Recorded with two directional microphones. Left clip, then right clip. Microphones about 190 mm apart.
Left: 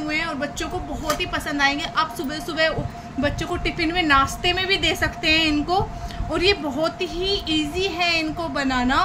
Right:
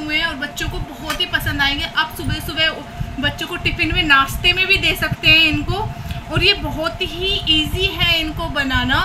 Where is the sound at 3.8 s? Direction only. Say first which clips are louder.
Right 4 dB; 35° left (ahead or behind).